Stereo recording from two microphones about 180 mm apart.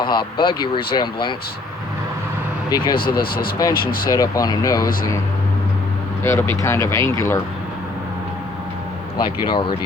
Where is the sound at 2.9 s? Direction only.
55° left (ahead or behind).